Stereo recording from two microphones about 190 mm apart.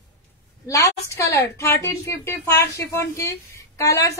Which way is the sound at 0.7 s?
15° left (ahead or behind).